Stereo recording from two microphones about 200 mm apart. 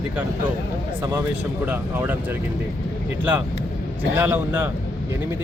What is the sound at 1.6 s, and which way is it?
Speech, 10° right (ahead or behind).